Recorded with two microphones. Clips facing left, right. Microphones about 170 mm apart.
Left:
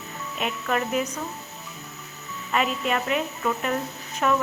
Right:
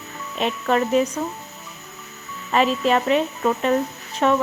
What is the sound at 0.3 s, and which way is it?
Speech, 30° right (ahead or behind).